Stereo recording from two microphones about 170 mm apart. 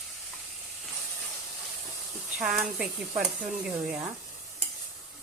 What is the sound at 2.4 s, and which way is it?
Speech, 5° right (ahead or behind).